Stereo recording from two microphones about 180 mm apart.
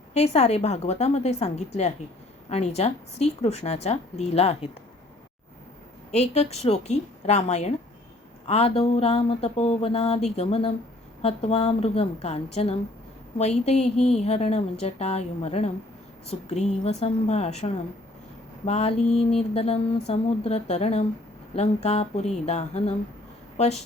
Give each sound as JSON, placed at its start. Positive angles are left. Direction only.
{"t": 0.1, "sound": "a woman's voice", "side_deg": 35}
{"t": 6.1, "sound": "a woman's voice", "side_deg": 35}